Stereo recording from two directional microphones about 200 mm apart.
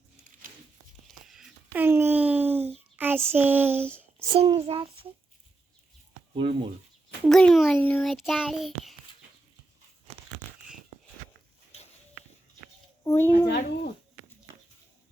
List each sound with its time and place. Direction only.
1.0 s a sound: centre (ahead or behind)
2.9 s child singing: 10° right (ahead or behind)
4.4 s a child's voice: 30° right (ahead or behind)
6.3 s a child's voice: 25° right (ahead or behind)
7.3 s a child's voice: 5° left (ahead or behind)
10.4 s tearing: 40° right (ahead or behind)
13.1 s a woman's voice: 10° left (ahead or behind)
13.5 s speech: 50° left (ahead or behind)